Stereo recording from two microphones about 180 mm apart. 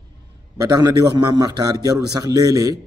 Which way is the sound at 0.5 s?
20° right (ahead or behind).